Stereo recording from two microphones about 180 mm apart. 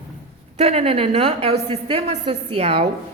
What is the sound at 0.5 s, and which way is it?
A woman's voice, 35° right (ahead or behind).